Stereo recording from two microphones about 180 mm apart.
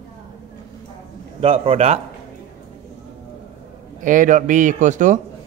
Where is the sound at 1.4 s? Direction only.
30° right (ahead or behind).